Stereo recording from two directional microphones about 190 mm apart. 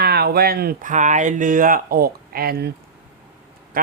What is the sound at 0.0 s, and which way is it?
Speech, 55° right (ahead or behind).